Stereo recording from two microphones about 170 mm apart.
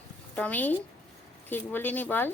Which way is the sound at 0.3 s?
10° left (ahead or behind).